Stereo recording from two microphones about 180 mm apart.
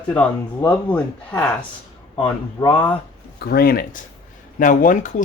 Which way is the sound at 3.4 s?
55° left (ahead or behind).